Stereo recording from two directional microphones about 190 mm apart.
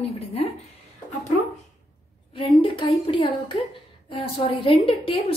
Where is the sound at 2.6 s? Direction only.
25° left (ahead or behind).